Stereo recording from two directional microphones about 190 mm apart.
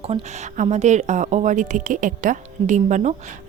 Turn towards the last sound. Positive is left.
turn(degrees=-40)  # may be behind; listen again after turning